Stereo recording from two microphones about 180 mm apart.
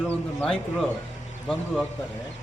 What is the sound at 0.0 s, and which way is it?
A man's voice, 5° left (ahead or behind).